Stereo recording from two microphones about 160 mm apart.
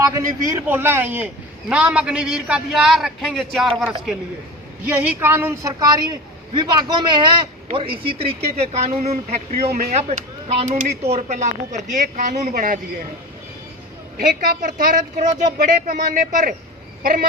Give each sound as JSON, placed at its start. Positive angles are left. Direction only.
{"t": 0.0, "sound": "a man's voice", "side_deg": -20}
{"t": 4.9, "sound": "a woman's voice", "side_deg": -10}
{"t": 14.2, "sound": "a woman's voice", "side_deg": -60}
{"t": 17.0, "sound": "chicken", "side_deg": -65}